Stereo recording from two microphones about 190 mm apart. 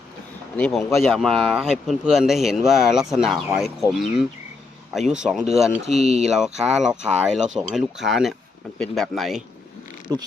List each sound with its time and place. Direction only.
0.5 s speech: 5° left (ahead or behind)
5.8 s speech: 35° right (ahead or behind)
6.2 s speech: centre (ahead or behind)